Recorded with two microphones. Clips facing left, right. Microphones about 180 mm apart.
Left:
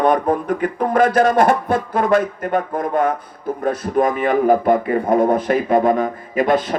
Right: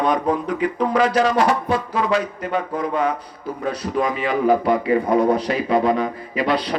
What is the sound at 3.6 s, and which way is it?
A man's voice, 50° left (ahead or behind).